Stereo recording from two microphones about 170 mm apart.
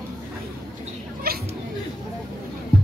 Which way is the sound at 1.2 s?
65° right (ahead or behind).